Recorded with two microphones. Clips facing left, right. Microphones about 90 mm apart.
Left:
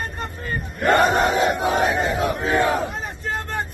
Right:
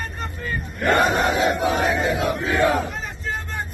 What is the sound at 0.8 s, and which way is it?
Battle cry, 40° left (ahead or behind).